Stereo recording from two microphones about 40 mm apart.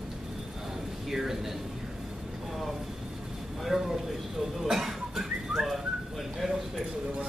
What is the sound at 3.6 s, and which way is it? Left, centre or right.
Speech, centre.